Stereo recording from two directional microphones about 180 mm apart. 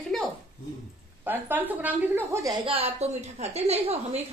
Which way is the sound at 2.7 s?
35° right (ahead or behind).